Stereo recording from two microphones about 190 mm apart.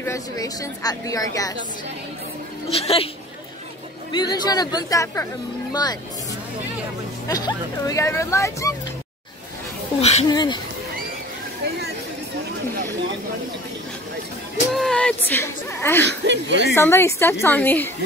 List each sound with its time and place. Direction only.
0.0 s speech: 15° left (ahead or behind)
2.7 s speech: 30° left (ahead or behind)
4.1 s speech: 20° left (ahead or behind)
7.2 s speech: 20° left (ahead or behind)
9.9 s speech: 35° left (ahead or behind)
10.3 s speech: 25° left (ahead or behind)
14.7 s speech: centre (ahead or behind)
16.0 s speech: 65° right (ahead or behind)
16.7 s speech: 15° left (ahead or behind)